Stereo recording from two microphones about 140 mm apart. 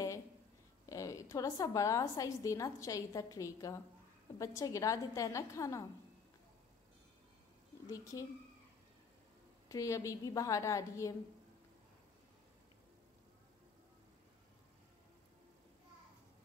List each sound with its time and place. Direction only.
0.8 s a woman's voice: 25° left (ahead or behind)
7.9 s a woman's voice: 25° left (ahead or behind)
9.7 s a woman's voice: 25° left (ahead or behind)